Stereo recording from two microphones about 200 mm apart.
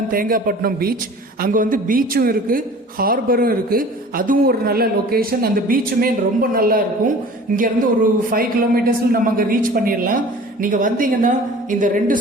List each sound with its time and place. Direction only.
0.1 s a woman's voice: 45° right (ahead or behind)